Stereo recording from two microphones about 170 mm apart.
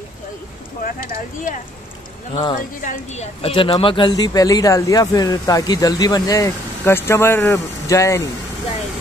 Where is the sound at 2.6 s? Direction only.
50° left (ahead or behind); by 8.2 s 15° left (ahead or behind).